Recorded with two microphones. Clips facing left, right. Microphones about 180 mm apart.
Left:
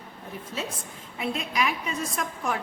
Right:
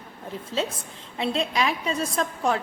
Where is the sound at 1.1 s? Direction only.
30° right (ahead or behind).